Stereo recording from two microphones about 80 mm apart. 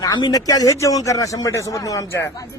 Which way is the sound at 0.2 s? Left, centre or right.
Left.